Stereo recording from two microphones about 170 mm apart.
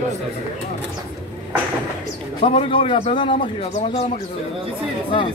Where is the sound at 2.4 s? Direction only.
30° left (ahead or behind).